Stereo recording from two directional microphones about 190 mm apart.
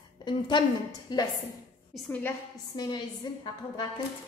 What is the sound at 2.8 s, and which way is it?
Speech, 20° left (ahead or behind).